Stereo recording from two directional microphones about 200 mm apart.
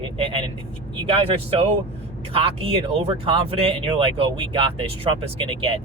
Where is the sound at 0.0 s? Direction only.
25° right (ahead or behind).